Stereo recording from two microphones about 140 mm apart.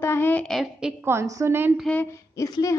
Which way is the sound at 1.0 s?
20° right (ahead or behind).